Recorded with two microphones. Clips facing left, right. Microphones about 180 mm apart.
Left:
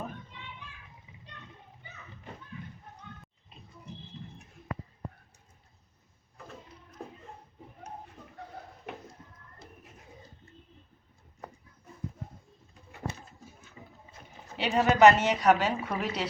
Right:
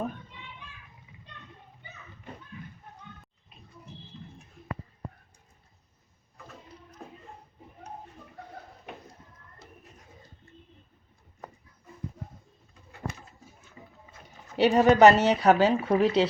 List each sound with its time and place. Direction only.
14.6 s speech: 40° right (ahead or behind)